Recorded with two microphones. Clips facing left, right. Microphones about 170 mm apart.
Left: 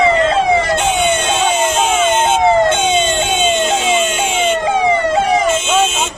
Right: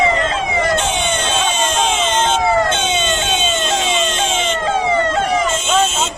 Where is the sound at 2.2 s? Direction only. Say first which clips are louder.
Left 3 dB; 20° left (ahead or behind).